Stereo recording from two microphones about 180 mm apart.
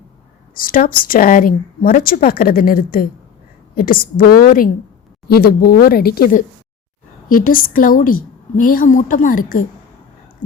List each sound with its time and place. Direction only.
0.5 s a woman's voice: 50° left (ahead or behind)